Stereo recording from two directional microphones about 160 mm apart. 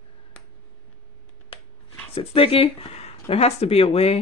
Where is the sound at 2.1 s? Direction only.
35° left (ahead or behind).